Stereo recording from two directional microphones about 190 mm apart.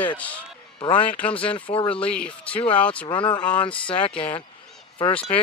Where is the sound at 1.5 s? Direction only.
25° left (ahead or behind).